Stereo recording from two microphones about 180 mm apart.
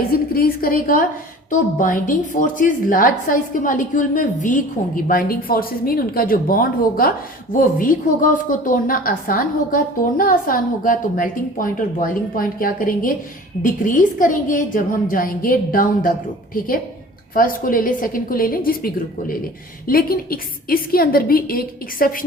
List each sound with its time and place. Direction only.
0.1 s a woman's voice: 55° left (ahead or behind)
17.3 s a woman's voice: 50° left (ahead or behind)